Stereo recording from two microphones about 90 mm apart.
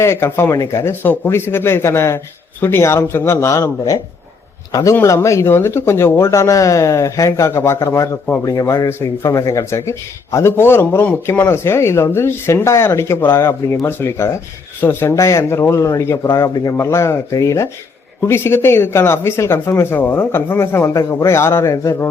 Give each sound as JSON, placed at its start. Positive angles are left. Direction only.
{"t": 0.0, "sound": "speech", "side_deg": 30}